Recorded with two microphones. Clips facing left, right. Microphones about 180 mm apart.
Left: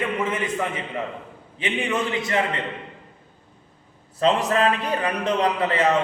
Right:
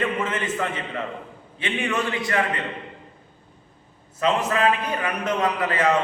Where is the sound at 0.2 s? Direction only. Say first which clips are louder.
Left 1 dB; 10° left (ahead or behind).